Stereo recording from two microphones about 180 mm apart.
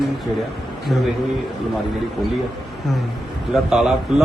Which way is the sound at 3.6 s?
Centre (ahead or behind).